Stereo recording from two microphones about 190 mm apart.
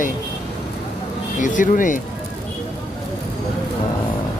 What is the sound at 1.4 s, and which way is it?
Speech, 45° left (ahead or behind).